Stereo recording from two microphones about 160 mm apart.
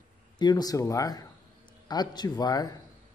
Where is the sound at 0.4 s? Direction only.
25° left (ahead or behind).